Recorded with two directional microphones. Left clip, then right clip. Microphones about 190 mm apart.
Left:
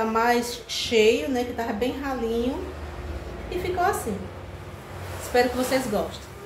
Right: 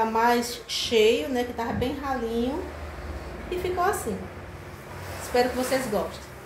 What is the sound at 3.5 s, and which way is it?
Speech, 15° right (ahead or behind).